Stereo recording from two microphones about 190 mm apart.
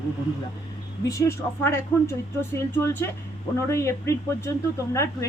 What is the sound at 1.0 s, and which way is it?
A woman's voice, 15° left (ahead or behind).